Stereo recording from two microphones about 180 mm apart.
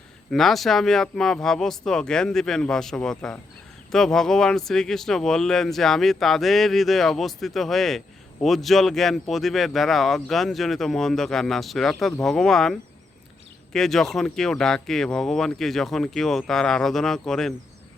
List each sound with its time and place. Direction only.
0.3 s speech: centre (ahead or behind)